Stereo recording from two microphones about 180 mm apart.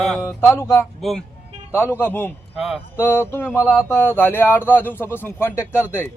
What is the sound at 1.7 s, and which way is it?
Speech, 10° left (ahead or behind).